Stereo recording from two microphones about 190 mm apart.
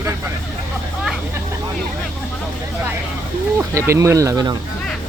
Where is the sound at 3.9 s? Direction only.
15° right (ahead or behind).